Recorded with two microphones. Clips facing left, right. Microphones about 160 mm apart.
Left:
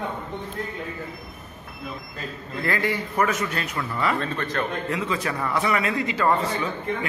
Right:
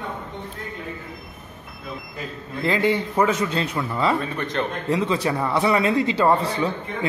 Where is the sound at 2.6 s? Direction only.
20° right (ahead or behind).